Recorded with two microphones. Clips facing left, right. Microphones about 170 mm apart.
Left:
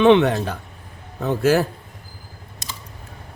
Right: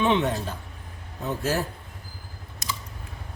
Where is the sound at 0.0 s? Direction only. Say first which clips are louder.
Left 9 dB; 70° left (ahead or behind).